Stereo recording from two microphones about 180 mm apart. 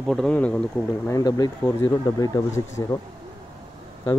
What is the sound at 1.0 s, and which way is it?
Speech, 20° left (ahead or behind).